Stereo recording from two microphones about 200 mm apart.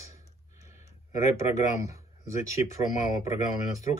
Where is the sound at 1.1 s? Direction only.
15° right (ahead or behind).